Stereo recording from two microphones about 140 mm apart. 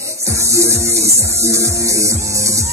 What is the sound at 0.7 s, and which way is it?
Music, 50° right (ahead or behind).